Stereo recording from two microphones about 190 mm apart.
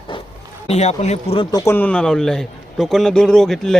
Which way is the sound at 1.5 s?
15° left (ahead or behind).